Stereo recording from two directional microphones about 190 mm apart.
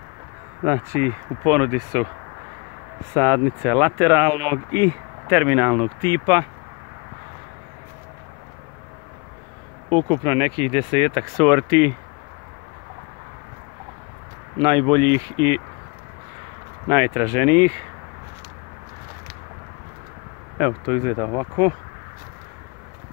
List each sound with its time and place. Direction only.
0.7 s speech: 10° right (ahead or behind)
3.1 s speech: 15° right (ahead or behind)
6.0 s speech: 20° right (ahead or behind)
9.8 s speech: 20° right (ahead or behind)
14.6 s speech: 20° right (ahead or behind)
16.9 s speech: 15° right (ahead or behind)
20.5 s speech: 10° right (ahead or behind)